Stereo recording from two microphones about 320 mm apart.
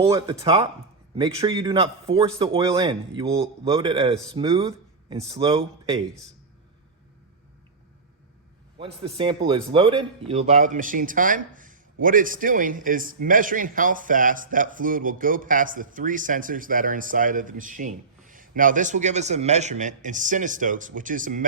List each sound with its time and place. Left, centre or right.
0.0 s a man's voice: centre
8.8 s speech: centre